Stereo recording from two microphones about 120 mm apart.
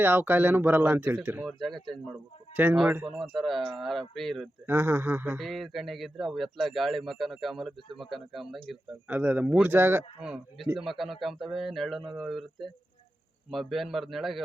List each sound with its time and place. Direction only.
0.0 s speech: 15° right (ahead or behind)
1.5 s a man's voice: centre (ahead or behind)
2.6 s speech: 15° right (ahead or behind)
3.0 s a man's voice: 5° right (ahead or behind)
4.6 s speech: 20° right (ahead or behind)
5.4 s a man's voice: centre (ahead or behind)
9.0 s speech: 15° right (ahead or behind)
10.2 s a man's voice: 5° right (ahead or behind)